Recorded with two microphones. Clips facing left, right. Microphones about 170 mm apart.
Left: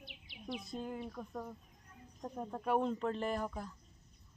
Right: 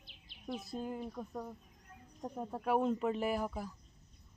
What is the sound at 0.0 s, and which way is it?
Bird, 65° left (ahead or behind).